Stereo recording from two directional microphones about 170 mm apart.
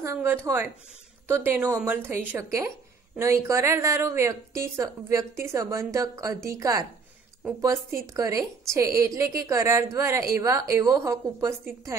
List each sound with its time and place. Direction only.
0.0 s a woman's voice: 15° right (ahead or behind)